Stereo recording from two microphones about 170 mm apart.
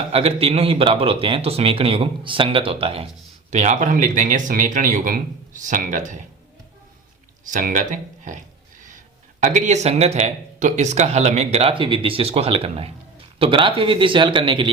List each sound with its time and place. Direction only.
0.1 s speech: 35° right (ahead or behind)
7.5 s speech: 50° right (ahead or behind)
9.4 s speech: 45° right (ahead or behind); by 14.7 s 30° right (ahead or behind)